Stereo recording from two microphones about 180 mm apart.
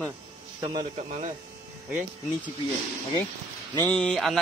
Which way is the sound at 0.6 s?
25° right (ahead or behind).